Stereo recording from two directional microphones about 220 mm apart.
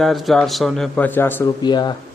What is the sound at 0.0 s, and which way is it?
A man's voice, centre (ahead or behind).